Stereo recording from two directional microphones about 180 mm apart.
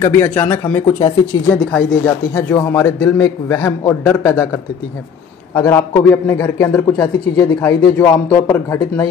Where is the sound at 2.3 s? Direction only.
15° left (ahead or behind).